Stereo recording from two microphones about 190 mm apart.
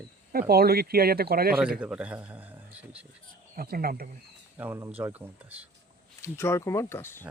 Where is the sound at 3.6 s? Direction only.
50° right (ahead or behind).